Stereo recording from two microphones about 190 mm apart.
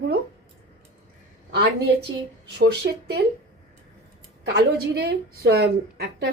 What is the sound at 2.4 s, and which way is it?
Speech, 60° right (ahead or behind).